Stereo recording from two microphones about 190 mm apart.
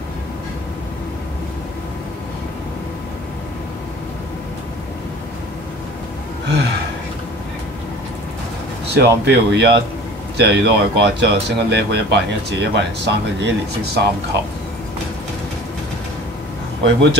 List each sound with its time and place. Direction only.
6.4 s gasp: 65° right (ahead or behind)
8.9 s speech: 60° right (ahead or behind)
16.8 s speech: 65° right (ahead or behind)